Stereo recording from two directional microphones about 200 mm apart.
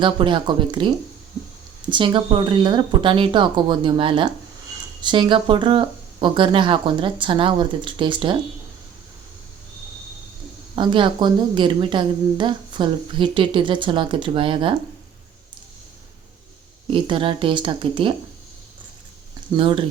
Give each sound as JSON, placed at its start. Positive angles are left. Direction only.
{"t": 0.0, "sound": "a woman's voice", "side_deg": -25}
{"t": 10.8, "sound": "a woman's voice", "side_deg": -25}
{"t": 16.9, "sound": "a woman's voice", "side_deg": -25}
{"t": 19.5, "sound": "a woman's voice", "side_deg": -25}